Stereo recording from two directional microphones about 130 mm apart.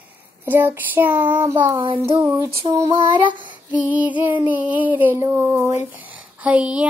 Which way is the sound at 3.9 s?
10° right (ahead or behind).